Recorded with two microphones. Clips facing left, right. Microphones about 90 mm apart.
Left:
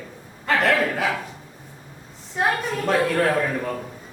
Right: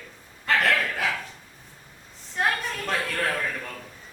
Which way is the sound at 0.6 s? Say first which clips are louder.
Left 6 dB; 35° left (ahead or behind).